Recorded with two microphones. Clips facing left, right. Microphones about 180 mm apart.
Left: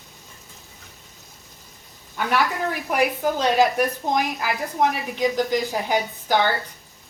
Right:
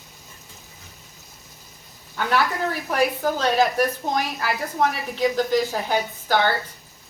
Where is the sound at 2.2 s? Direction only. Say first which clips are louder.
Even; 15° left (ahead or behind).